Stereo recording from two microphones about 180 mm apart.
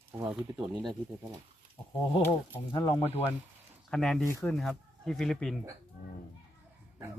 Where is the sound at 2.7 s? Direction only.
25° left (ahead or behind).